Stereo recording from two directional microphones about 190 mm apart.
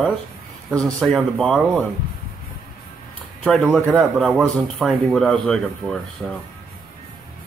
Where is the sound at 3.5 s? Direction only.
Centre (ahead or behind).